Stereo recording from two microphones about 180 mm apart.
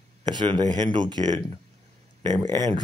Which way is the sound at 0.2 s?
25° right (ahead or behind).